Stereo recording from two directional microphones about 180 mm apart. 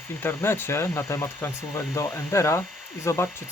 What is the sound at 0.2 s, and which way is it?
Speech, 15° left (ahead or behind).